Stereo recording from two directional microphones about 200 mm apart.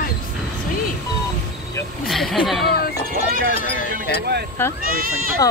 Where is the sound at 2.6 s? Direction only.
50° left (ahead or behind).